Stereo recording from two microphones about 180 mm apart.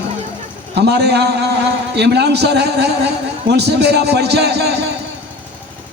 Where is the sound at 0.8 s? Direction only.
65° right (ahead or behind).